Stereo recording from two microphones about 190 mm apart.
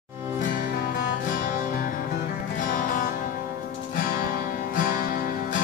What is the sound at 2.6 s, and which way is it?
Music, 45° left (ahead or behind).